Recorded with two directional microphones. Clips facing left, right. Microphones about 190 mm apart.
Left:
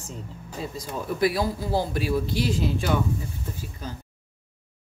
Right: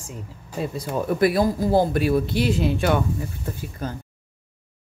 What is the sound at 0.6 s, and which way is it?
A man's voice, 60° right (ahead or behind).